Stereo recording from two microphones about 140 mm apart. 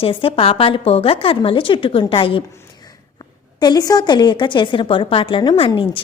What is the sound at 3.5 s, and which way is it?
A woman's voice, 30° left (ahead or behind).